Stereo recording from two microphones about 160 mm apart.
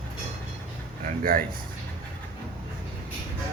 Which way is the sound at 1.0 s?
65° right (ahead or behind).